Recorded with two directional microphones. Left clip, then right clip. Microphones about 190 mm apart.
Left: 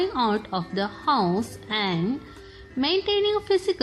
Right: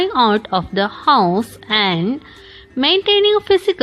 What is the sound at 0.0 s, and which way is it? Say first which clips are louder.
A woman's voice: right 9 dB; 35° right (ahead or behind).